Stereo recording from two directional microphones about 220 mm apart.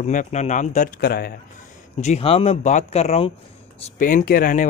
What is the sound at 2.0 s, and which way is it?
Speech, 30° left (ahead or behind).